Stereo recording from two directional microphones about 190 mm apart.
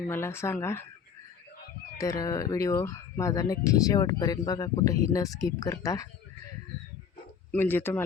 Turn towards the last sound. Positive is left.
turn(degrees=10)  # may be behind; listen again after turning